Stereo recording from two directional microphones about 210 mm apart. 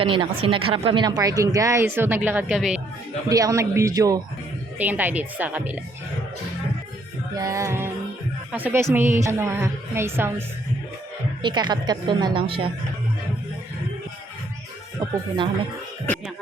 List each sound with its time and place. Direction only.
0.0 s speech: 25° right (ahead or behind); by 2.8 s 5° right (ahead or behind)
3.2 s speech: 15° right (ahead or behind)
7.3 s speech: 15° right (ahead or behind)
11.4 s a woman's voice: 20° right (ahead or behind)